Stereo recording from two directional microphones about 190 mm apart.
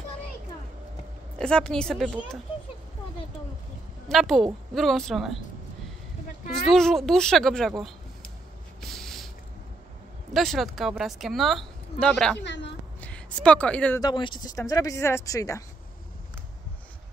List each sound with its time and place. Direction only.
1.4 s speech: 5° left (ahead or behind)
4.1 s speech: centre (ahead or behind)
6.7 s speech: centre (ahead or behind)
8.8 s a sound: centre (ahead or behind)
10.3 s speech: centre (ahead or behind)
12.4 s a woman's voice: 65° left (ahead or behind)
13.0 s a woman's voice: 5° left (ahead or behind)
14.0 s speech: 25° left (ahead or behind)